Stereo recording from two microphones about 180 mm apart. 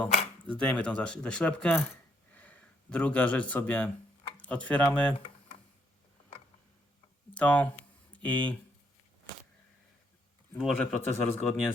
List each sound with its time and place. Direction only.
0.4 s speech: 5° left (ahead or behind)
7.3 s a sound: 5° left (ahead or behind)
10.8 s a man's voice: 5° left (ahead or behind)